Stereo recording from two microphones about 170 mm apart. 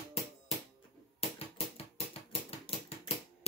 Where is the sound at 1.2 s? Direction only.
35° left (ahead or behind).